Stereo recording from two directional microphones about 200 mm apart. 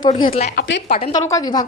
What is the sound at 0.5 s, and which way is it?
Speech, 55° left (ahead or behind).